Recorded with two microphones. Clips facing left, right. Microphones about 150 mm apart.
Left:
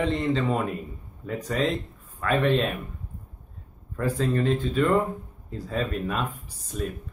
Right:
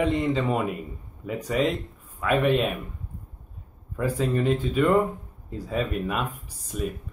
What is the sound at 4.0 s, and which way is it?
Speech, 10° right (ahead or behind).